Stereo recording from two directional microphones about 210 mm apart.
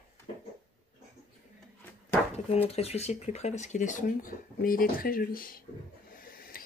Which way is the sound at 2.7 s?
30° left (ahead or behind).